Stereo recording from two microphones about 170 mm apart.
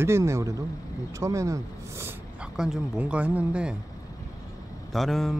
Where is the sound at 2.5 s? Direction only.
5° right (ahead or behind).